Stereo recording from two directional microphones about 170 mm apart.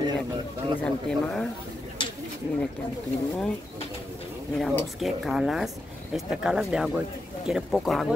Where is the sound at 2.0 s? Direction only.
30° left (ahead or behind).